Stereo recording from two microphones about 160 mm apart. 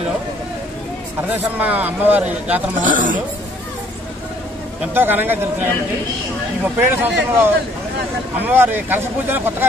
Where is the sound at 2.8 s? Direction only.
55° right (ahead or behind).